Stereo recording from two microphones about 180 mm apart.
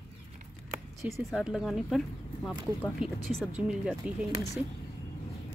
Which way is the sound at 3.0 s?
Centre (ahead or behind).